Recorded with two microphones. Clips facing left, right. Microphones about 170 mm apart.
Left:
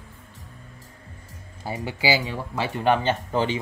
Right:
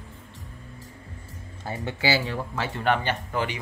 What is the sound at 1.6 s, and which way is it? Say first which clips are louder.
Speech: left 2 dB; 10° left (ahead or behind).